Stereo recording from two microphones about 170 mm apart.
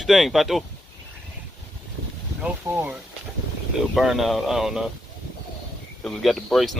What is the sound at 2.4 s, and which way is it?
Speech, 10° right (ahead or behind).